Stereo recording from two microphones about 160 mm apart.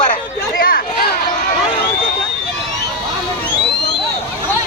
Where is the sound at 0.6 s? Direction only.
60° left (ahead or behind).